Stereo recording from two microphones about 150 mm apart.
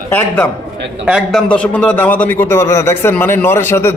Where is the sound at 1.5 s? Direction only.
10° left (ahead or behind).